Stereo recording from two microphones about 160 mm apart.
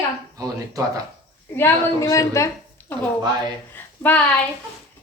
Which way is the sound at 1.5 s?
15° left (ahead or behind).